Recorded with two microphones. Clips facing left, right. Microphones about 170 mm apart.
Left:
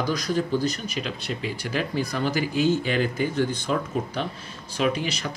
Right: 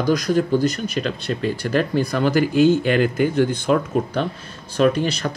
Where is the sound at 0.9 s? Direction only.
60° right (ahead or behind).